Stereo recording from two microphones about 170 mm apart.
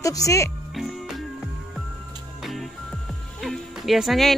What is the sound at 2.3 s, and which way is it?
Music, centre (ahead or behind).